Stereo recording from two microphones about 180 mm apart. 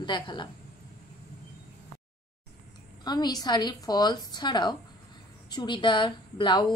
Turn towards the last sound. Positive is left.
turn(degrees=25)  # may be behind; listen again after turning